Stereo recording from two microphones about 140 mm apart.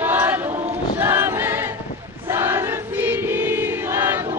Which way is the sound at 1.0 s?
15° right (ahead or behind).